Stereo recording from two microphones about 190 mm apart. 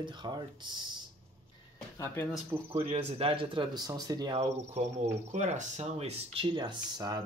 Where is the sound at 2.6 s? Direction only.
35° right (ahead or behind).